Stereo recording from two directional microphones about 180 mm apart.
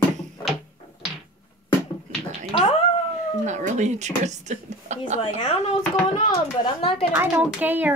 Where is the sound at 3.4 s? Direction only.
40° right (ahead or behind).